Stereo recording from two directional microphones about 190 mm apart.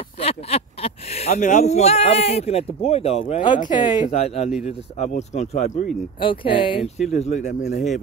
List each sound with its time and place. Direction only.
0.2 s speech: 30° left (ahead or behind)
3.6 s speech: 25° left (ahead or behind)
4.1 s speech: 35° left (ahead or behind)